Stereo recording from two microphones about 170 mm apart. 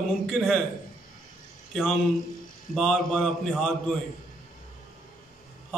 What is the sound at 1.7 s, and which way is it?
A man's voice, 5° left (ahead or behind).